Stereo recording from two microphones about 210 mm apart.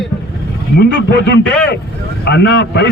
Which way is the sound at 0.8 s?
55° left (ahead or behind).